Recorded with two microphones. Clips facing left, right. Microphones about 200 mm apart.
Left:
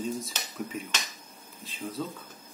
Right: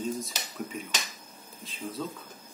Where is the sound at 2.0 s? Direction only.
Centre (ahead or behind).